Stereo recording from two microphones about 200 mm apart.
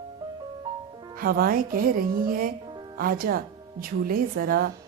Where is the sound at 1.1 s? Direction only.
45° right (ahead or behind).